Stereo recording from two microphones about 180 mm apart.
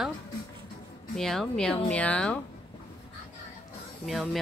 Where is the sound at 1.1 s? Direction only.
Centre (ahead or behind).